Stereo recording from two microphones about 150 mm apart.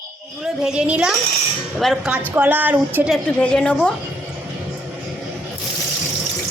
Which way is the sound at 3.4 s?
5° left (ahead or behind).